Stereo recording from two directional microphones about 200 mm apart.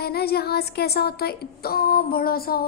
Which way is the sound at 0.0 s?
50° left (ahead or behind).